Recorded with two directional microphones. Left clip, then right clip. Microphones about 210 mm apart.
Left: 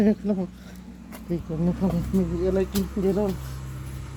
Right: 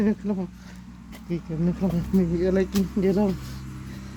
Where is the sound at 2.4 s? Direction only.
15° right (ahead or behind).